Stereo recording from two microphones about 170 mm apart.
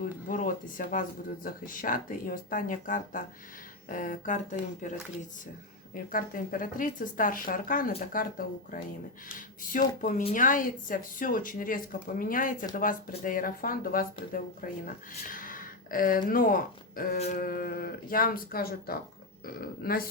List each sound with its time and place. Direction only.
0.0 s speech: 50° left (ahead or behind)
5.9 s speech: 55° left (ahead or behind)
10.0 s speech: 55° left (ahead or behind)
17.2 s a sound: 40° left (ahead or behind)
17.4 s speech: 55° left (ahead or behind)